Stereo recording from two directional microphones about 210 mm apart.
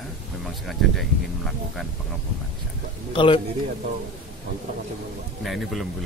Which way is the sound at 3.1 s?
25° left (ahead or behind).